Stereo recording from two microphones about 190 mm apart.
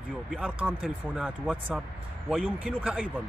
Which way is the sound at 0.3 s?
5° right (ahead or behind).